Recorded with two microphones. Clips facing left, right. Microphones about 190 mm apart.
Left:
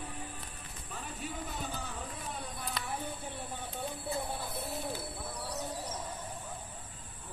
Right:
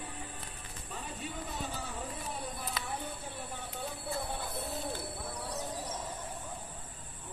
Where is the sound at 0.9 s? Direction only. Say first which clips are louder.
Even; centre (ahead or behind).